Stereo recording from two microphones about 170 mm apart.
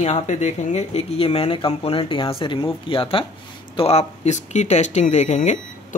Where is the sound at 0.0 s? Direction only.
40° left (ahead or behind).